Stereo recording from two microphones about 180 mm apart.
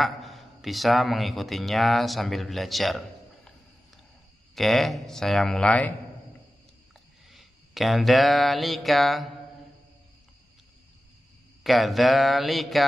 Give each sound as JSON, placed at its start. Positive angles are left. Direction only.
{"t": 0.0, "sound": "speech", "side_deg": 0}
{"t": 4.6, "sound": "speech", "side_deg": 0}
{"t": 7.2, "sound": "a sound", "side_deg": 0}
{"t": 11.6, "sound": "speech", "side_deg": 0}